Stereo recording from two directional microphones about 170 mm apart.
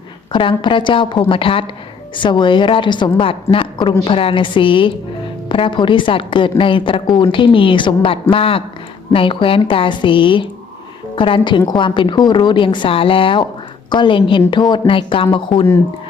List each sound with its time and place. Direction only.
0.3 s a woman's voice: 30° left (ahead or behind)